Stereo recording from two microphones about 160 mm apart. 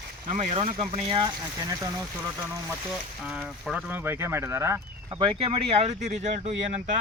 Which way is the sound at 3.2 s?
5° right (ahead or behind).